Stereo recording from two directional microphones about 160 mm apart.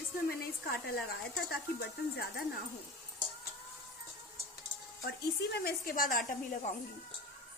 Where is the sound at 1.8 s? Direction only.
90° left.